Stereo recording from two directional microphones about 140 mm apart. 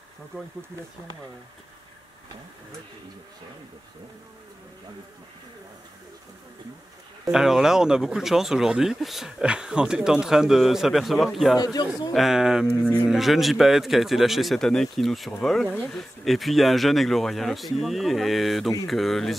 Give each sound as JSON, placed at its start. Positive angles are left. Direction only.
{"t": 7.2, "sound": "speech", "side_deg": -5}
{"t": 11.5, "sound": "a man's voice", "side_deg": 30}
{"t": 12.1, "sound": "speech", "side_deg": 0}